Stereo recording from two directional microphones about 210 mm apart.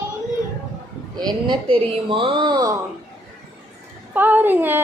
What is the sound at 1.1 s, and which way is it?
Speech, 20° right (ahead or behind).